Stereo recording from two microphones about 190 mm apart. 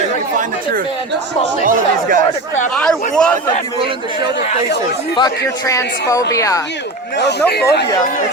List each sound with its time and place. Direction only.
1.6 s speech: 45° right (ahead or behind)
2.7 s speech: 5° left (ahead or behind)
5.1 s a man's voice: 20° left (ahead or behind)
7.2 s speech: 60° left (ahead or behind)